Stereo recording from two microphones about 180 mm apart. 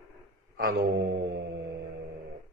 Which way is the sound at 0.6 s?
60° right (ahead or behind).